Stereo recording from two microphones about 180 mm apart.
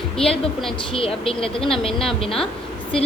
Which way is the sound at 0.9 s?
30° left (ahead or behind).